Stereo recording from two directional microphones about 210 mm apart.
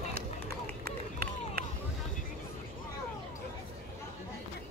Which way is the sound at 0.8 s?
45° right (ahead or behind).